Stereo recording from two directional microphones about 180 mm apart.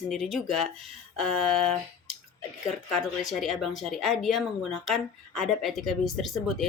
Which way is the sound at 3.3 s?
Centre (ahead or behind).